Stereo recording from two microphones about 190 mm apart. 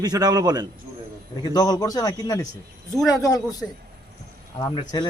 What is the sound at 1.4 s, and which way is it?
Speech, 20° left (ahead or behind).